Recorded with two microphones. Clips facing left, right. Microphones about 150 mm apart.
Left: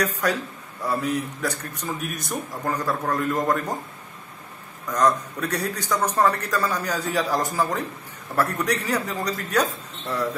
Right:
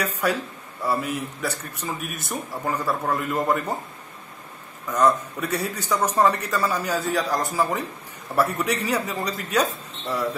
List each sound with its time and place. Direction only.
0.0 s a man's voice: 10° right (ahead or behind)
4.9 s a man's voice: 10° right (ahead or behind)